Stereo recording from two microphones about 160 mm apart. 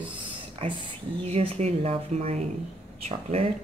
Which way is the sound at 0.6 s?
35° right (ahead or behind).